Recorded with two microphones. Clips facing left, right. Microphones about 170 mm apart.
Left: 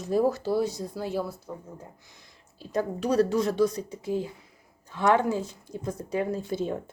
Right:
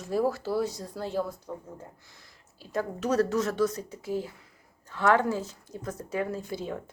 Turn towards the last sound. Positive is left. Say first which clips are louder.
# left 4 dB
turn(degrees=25)  # may be behind; listen again after turning